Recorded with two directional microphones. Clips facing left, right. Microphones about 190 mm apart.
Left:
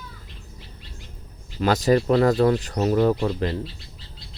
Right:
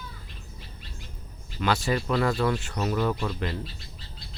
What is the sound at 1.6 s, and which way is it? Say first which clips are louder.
Speech: left 7 dB; 40° left (ahead or behind).